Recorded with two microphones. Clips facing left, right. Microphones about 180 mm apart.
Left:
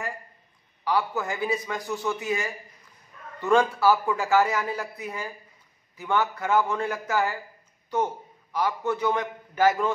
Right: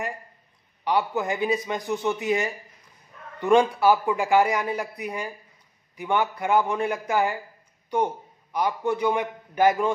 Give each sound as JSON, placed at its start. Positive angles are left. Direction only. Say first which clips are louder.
{"t": 0.8, "sound": "a man's voice", "louder": "right 2 dB", "side_deg": -20}